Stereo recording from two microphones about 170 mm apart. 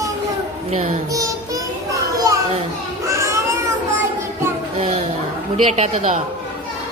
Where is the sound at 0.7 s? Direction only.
40° right (ahead or behind).